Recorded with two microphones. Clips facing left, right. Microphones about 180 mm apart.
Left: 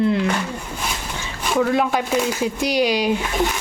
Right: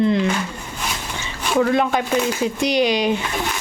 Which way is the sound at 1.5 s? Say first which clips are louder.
Right 1 dB; 5° left (ahead or behind).